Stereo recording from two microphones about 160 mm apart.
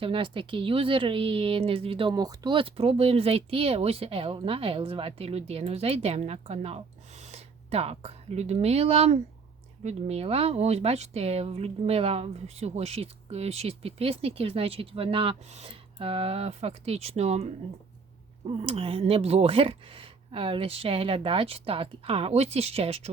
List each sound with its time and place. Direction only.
0.0 s a woman's voice: 30° right (ahead or behind)